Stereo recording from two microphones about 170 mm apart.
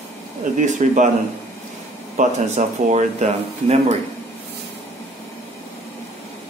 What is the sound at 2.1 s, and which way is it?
Speech, 45° right (ahead or behind).